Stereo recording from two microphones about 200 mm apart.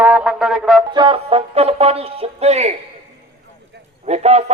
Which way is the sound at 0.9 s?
25° right (ahead or behind).